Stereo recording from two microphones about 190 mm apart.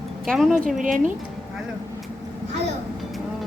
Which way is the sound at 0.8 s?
45° right (ahead or behind).